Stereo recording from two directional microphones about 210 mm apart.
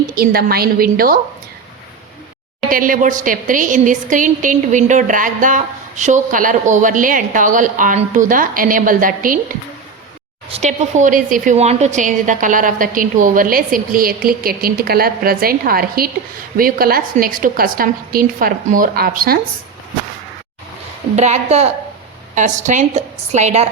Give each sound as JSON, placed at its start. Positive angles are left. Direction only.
{"t": 0.2, "sound": "a woman's voice", "side_deg": -45}
{"t": 2.6, "sound": "a woman's voice", "side_deg": -40}
{"t": 10.5, "sound": "a woman's voice", "side_deg": -35}
{"t": 21.2, "sound": "a woman's voice", "side_deg": -30}